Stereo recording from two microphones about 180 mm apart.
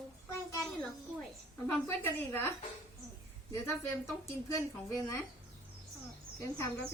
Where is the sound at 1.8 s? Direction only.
10° left (ahead or behind).